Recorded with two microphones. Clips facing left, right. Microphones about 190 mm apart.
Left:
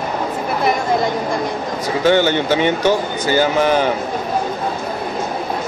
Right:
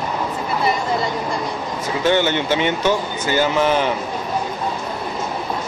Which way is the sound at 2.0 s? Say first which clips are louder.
Left 3 dB; 40° left (ahead or behind).